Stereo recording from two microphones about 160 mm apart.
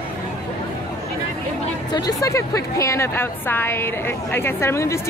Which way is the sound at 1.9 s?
20° left (ahead or behind).